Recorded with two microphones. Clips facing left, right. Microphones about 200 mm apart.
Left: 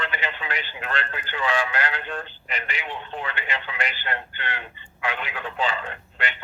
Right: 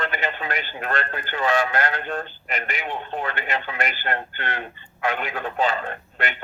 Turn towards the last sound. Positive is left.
turn(degrees=-45)  # may be behind; listen again after turning